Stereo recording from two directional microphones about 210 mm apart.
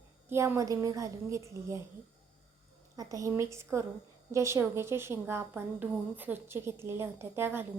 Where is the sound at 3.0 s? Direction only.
15° right (ahead or behind).